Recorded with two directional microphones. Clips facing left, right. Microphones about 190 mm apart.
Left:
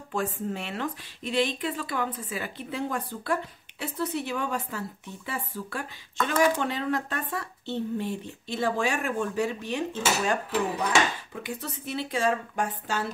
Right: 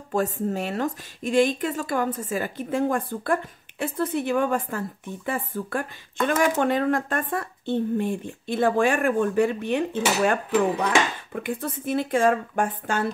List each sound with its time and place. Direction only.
0.1 s speech: 40° right (ahead or behind)